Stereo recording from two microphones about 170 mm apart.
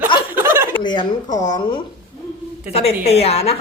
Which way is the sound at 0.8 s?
25° left (ahead or behind).